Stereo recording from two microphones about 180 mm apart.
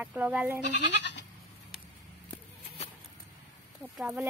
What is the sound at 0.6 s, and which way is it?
Goat, 75° left (ahead or behind).